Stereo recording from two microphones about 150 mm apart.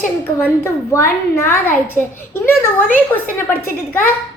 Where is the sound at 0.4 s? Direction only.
15° left (ahead or behind).